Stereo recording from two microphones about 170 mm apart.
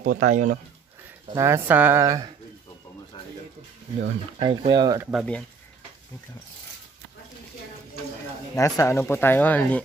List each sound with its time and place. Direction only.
0.0 s speech: 50° right (ahead or behind)
1.3 s speech: 15° right (ahead or behind)
4.4 s speech: 25° right (ahead or behind)
5.1 s speech: 5° left (ahead or behind)
8.5 s speech: 20° left (ahead or behind)